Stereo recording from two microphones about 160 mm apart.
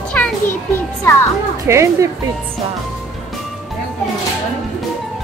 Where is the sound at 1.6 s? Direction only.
20° right (ahead or behind).